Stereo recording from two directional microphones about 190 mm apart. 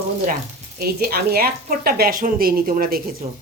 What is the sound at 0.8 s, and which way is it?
Speech, 55° right (ahead or behind).